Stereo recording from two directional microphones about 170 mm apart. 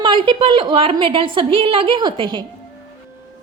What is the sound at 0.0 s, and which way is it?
A woman's voice, 30° right (ahead or behind).